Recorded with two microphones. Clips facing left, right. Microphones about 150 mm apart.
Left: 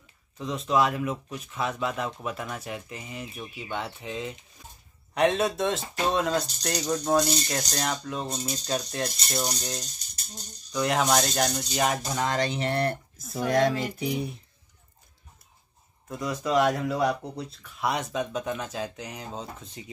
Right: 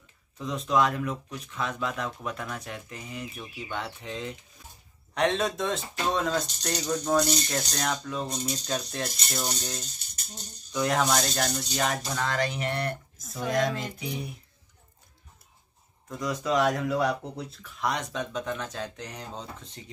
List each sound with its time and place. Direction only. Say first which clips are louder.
0.4 s speech: left 1 dB; centre (ahead or behind)
12.1 s speech: left 2 dB; 20° left (ahead or behind)
16.1 s speech: left 1 dB; 5° left (ahead or behind)